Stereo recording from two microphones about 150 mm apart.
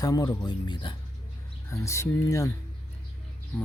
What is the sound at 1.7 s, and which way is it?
Speech, 20° left (ahead or behind).